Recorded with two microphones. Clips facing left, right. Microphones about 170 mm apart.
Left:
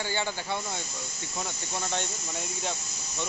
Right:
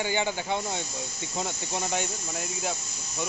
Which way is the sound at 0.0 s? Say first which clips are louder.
Right 4 dB; 15° right (ahead or behind).